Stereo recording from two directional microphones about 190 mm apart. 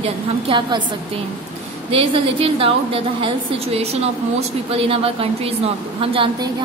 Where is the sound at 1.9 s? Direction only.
30° right (ahead or behind).